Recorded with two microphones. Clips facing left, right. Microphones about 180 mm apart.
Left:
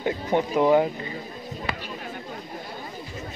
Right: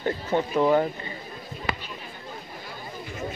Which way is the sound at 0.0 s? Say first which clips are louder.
Left 1 dB; 15° left (ahead or behind).